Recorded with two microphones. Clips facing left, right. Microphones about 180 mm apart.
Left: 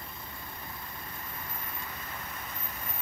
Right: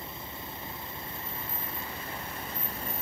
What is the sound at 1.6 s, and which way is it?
Vehicle, 30° right (ahead or behind).